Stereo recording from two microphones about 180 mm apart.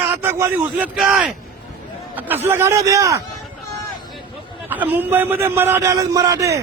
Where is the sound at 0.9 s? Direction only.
Centre (ahead or behind).